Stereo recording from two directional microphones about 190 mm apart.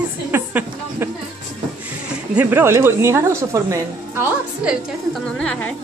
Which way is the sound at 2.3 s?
10° right (ahead or behind).